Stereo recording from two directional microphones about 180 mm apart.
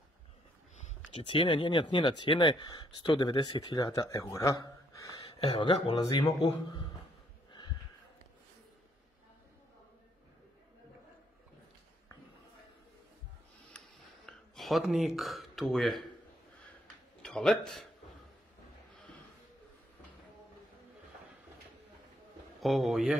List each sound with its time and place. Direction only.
0.8 s speech: 30° left (ahead or behind)
13.7 s a sound: 5° left (ahead or behind)
17.2 s speech: 5° left (ahead or behind)
22.6 s a man's voice: centre (ahead or behind)